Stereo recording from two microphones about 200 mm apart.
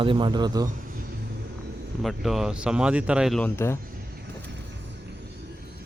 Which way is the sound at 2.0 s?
Centre (ahead or behind).